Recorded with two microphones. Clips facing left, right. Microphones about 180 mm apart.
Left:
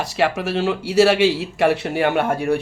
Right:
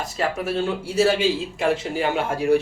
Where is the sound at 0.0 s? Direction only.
80° left.